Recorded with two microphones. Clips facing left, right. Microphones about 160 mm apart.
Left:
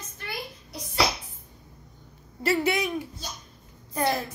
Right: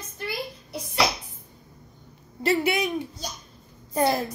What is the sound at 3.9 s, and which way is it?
Speech, 30° right (ahead or behind).